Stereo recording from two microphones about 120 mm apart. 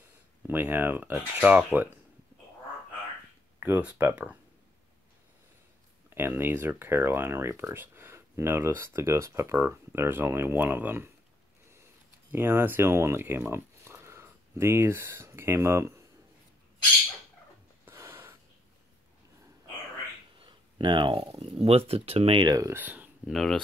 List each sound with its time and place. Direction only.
0.5 s speech: 15° right (ahead or behind)
3.5 s speech: 15° right (ahead or behind)
6.1 s speech: 20° right (ahead or behind)
12.3 s speech: 20° right (ahead or behind)
17.8 s a sound: 20° right (ahead or behind)
20.3 s a sound: 45° right (ahead or behind)
21.6 s speech: 55° right (ahead or behind)
22.4 s speech: 30° right (ahead or behind)
22.8 s a sound: 15° right (ahead or behind)
23.3 s speech: 5° left (ahead or behind)